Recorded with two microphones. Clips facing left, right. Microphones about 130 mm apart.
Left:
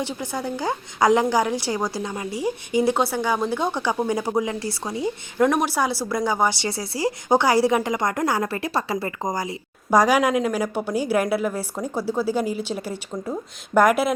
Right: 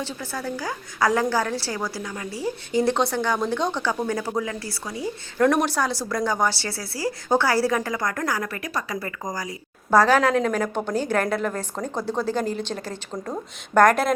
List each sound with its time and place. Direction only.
0.0 s a woman's voice: 20° left (ahead or behind)
5.4 s a woman's voice: 5° left (ahead or behind); by 9.6 s 25° left (ahead or behind)
9.9 s a woman's voice: 15° left (ahead or behind)